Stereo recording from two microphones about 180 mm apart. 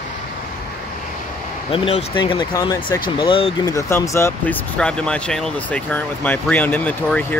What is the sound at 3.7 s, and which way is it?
Speech, 15° left (ahead or behind).